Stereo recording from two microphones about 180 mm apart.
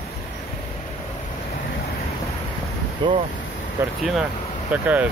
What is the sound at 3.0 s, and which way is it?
Speech, 25° right (ahead or behind).